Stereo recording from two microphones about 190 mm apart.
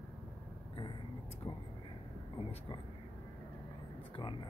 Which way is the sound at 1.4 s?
25° left (ahead or behind).